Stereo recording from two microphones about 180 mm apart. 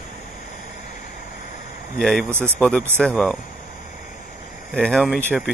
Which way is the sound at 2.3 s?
15° right (ahead or behind).